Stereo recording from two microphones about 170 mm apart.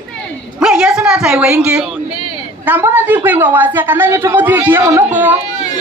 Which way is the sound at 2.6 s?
10° right (ahead or behind).